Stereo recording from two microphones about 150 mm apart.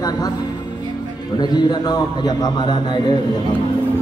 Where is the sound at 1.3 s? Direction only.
30° left (ahead or behind).